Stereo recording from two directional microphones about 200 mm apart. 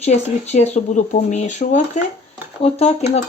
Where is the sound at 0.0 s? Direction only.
35° left (ahead or behind).